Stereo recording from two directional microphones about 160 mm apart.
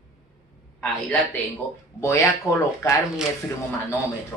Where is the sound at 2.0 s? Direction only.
15° left (ahead or behind).